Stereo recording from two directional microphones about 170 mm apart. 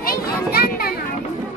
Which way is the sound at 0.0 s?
60° left (ahead or behind).